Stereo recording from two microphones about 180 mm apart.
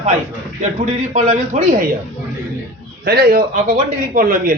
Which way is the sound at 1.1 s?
45° right (ahead or behind).